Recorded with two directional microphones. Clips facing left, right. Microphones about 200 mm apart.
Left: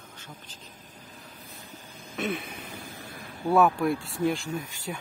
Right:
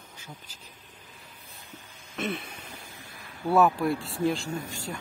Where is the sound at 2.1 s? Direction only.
Centre (ahead or behind).